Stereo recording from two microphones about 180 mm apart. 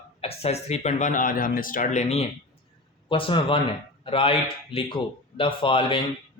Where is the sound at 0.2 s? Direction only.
35° left (ahead or behind).